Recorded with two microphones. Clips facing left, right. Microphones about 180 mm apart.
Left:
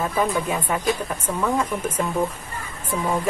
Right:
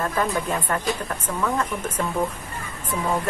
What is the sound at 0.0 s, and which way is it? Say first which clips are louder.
A woman's voice: left 2 dB; 10° left (ahead or behind).